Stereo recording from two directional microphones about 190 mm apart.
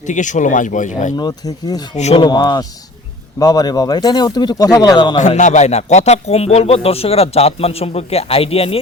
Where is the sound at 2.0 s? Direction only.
35° left (ahead or behind).